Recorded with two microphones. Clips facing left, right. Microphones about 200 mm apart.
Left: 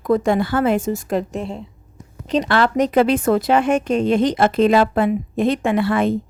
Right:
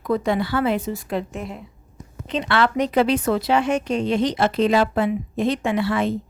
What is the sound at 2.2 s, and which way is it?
Speech, 40° left (ahead or behind).